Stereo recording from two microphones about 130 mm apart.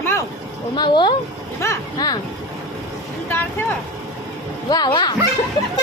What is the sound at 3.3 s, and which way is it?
Speech, 15° left (ahead or behind).